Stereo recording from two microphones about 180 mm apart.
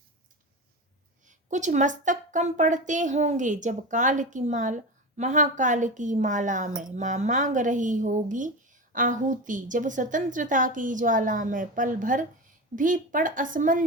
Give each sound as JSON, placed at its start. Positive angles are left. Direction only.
{"t": 1.3, "sound": "a woman's voice", "side_deg": -45}